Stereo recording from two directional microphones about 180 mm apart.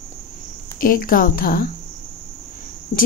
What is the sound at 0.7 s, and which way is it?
Speech, 50° left (ahead or behind).